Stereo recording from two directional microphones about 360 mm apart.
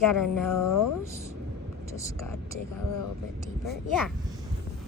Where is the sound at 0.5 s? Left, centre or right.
Left.